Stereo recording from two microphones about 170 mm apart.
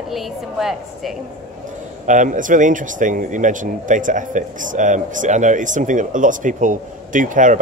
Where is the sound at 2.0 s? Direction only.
50° right (ahead or behind).